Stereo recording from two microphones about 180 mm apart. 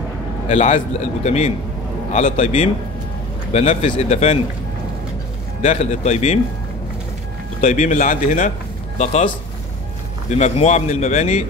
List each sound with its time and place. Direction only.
0.5 s a man's voice: 40° left (ahead or behind)
5.6 s a man's voice: 40° left (ahead or behind)
7.6 s speech: 45° left (ahead or behind)
10.3 s a man's voice: 40° left (ahead or behind)